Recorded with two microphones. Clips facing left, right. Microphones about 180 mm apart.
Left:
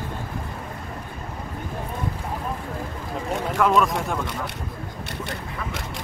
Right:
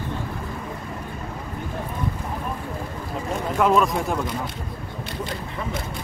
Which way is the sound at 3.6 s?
Centre (ahead or behind).